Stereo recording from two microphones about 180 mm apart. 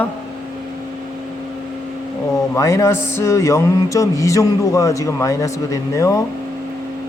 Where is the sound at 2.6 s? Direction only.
15° left (ahead or behind).